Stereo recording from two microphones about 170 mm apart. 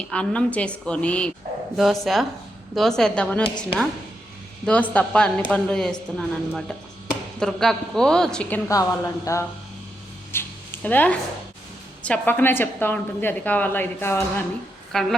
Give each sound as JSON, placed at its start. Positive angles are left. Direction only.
{"t": 0.1, "sound": "a woman's voice", "side_deg": 5}
{"t": 4.6, "sound": "a woman's voice", "side_deg": 10}
{"t": 10.3, "sound": "a sound", "side_deg": 10}
{"t": 12.0, "sound": "a woman's voice", "side_deg": 10}
{"t": 14.9, "sound": "speech", "side_deg": 5}